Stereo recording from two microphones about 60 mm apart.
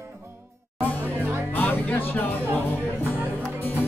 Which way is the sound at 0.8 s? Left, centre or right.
Left.